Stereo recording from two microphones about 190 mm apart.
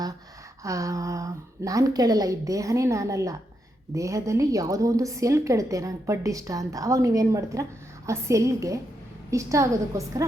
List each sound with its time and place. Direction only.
0.6 s a woman's voice: 15° right (ahead or behind)